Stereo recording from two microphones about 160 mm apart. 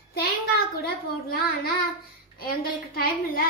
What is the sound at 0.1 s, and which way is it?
A child's voice, 80° left.